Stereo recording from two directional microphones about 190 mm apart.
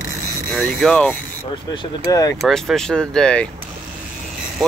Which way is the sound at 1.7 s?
20° left (ahead or behind).